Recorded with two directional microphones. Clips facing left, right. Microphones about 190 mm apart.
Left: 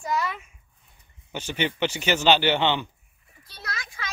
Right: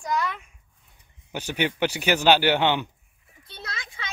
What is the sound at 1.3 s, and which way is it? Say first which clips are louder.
Speech: right 1 dB; 10° right (ahead or behind).